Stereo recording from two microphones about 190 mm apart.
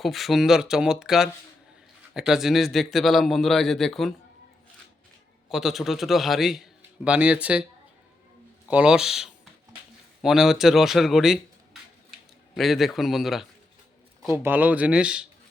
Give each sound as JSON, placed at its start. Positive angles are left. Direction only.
{"t": 0.0, "sound": "a man's voice", "side_deg": 0}
{"t": 5.5, "sound": "a man's voice", "side_deg": 0}
{"t": 8.7, "sound": "a man's voice", "side_deg": -5}